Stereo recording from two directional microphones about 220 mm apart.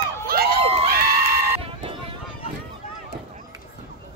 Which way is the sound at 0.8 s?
45° right (ahead or behind).